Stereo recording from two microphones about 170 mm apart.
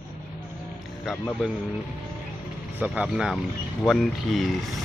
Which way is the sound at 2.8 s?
5° right (ahead or behind).